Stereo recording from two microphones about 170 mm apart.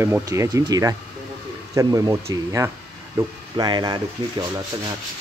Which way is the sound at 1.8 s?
20° right (ahead or behind).